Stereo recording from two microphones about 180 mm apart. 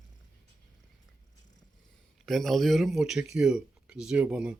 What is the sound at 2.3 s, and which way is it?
Speech, centre (ahead or behind).